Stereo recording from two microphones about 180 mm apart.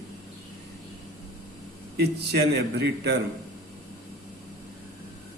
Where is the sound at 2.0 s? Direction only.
65° right (ahead or behind).